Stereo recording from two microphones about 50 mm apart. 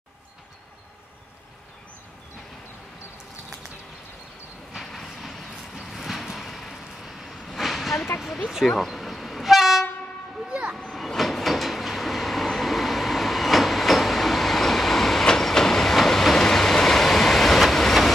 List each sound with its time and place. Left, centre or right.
4.8 s vehicle: centre
5.1 s vehicle: centre
7.4 s train: centre
7.9 s vehicle: left
8.2 s a sound: centre
8.6 s train: centre
10.9 s train: centre